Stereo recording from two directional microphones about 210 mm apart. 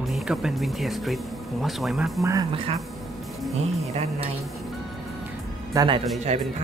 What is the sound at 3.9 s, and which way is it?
Speech, 30° right (ahead or behind).